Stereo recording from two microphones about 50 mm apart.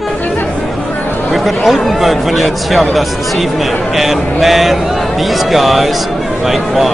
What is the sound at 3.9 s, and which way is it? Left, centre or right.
Speech, centre.